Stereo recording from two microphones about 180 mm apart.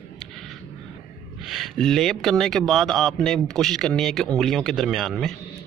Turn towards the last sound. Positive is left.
turn(degrees=0)  # may be behind; listen again after turning